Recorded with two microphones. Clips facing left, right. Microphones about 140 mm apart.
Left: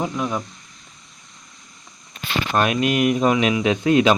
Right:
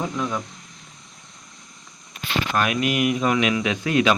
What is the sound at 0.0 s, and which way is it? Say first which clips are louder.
Speech: left 2 dB; 20° left (ahead or behind).